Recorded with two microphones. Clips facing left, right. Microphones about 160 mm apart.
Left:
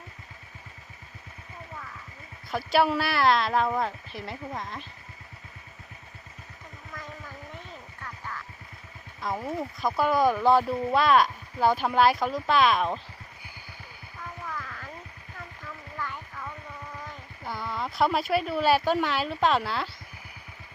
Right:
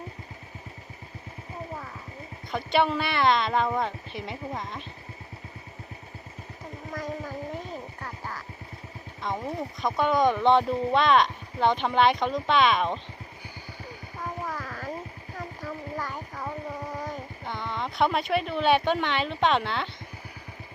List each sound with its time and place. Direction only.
1.7 s vehicle: 35° right (ahead or behind)
2.5 s speech: 5° left (ahead or behind)
6.9 s a sound: 40° right (ahead or behind)
9.2 s speech: 5° left (ahead or behind)
14.2 s a sound: 40° right (ahead or behind)
17.4 s speech: 5° left (ahead or behind)